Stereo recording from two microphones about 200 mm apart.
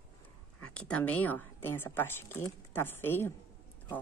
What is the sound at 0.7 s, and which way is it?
Speech, 5° left (ahead or behind).